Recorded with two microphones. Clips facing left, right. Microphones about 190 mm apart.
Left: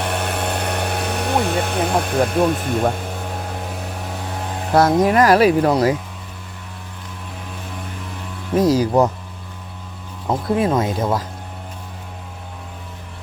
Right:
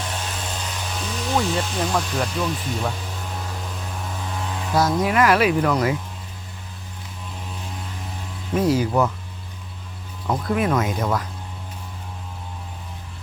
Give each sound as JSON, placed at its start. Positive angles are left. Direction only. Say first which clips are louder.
{"t": 0.0, "sound": "helicopter", "louder": "left 8 dB", "side_deg": 60}
{"t": 8.5, "sound": "speech", "louder": "left 4 dB", "side_deg": 40}
{"t": 10.2, "sound": "speech", "louder": "left 3 dB", "side_deg": 25}